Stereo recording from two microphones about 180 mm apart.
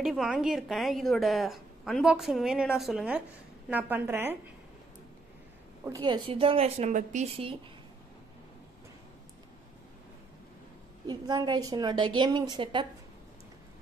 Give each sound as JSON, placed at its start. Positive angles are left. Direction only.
{"t": 0.0, "sound": "a woman's voice", "side_deg": 0}
{"t": 5.9, "sound": "a woman's voice", "side_deg": -25}
{"t": 11.1, "sound": "a woman's voice", "side_deg": -25}